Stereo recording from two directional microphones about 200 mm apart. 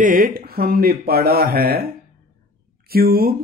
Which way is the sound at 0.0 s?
45° right (ahead or behind).